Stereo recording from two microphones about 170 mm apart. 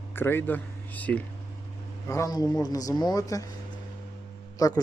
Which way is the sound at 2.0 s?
20° left (ahead or behind).